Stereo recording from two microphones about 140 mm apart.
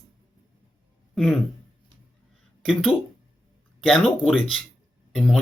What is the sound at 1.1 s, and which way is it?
Speech, 5° left (ahead or behind).